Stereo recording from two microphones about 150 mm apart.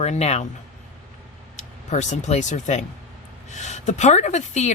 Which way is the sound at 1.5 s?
50° left (ahead or behind).